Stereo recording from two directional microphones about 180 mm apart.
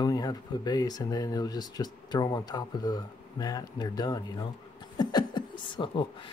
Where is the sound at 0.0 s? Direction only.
20° left (ahead or behind).